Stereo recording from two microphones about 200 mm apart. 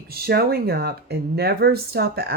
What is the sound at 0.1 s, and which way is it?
Speech, 50° right (ahead or behind).